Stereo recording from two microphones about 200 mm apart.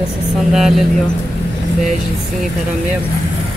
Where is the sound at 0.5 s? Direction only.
Centre (ahead or behind).